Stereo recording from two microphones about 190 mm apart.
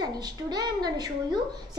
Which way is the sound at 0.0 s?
20° right (ahead or behind).